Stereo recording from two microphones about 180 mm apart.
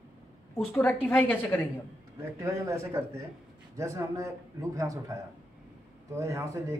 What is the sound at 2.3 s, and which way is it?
A man's voice, 15° right (ahead or behind).